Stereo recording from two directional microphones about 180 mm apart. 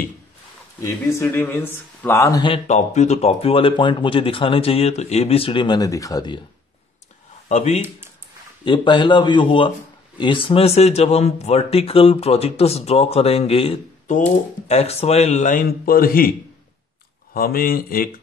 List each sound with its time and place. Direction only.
0.8 s speech: 15° left (ahead or behind)
2.4 s speech: 35° left (ahead or behind)
7.4 s speech: 40° left (ahead or behind)
8.6 s speech: 25° left (ahead or behind); by 16.3 s 55° left (ahead or behind)
17.3 s speech: 55° left (ahead or behind)